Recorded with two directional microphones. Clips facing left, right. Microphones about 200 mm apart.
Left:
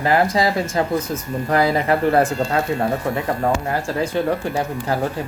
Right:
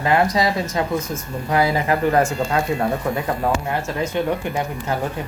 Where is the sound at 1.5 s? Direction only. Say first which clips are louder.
Left 1 dB; 35° left (ahead or behind).